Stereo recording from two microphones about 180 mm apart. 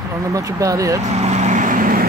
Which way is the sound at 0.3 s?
20° right (ahead or behind).